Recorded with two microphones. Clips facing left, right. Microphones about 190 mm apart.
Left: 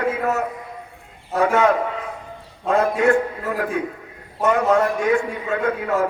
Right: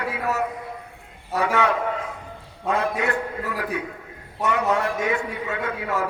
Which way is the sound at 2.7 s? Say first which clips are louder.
Left 8 dB; 45° left (ahead or behind).